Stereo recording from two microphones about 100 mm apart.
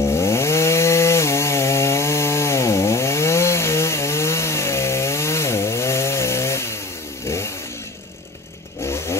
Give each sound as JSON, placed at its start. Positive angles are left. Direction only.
{"t": 0.0, "sound": "chainsaw", "side_deg": 25}
{"t": 8.8, "sound": "vehicle", "side_deg": 25}